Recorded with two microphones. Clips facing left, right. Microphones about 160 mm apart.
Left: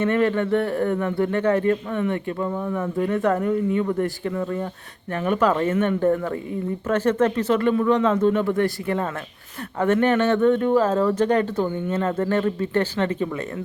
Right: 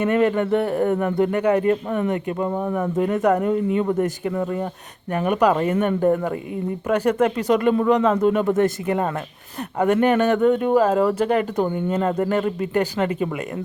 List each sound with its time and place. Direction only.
0.0 s speech: 15° right (ahead or behind)